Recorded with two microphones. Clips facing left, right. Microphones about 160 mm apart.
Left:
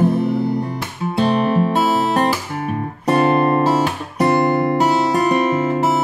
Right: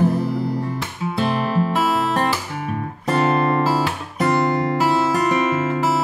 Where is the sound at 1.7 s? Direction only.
30° left (ahead or behind).